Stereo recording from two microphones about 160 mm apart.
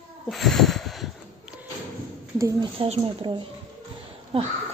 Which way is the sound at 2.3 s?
20° right (ahead or behind).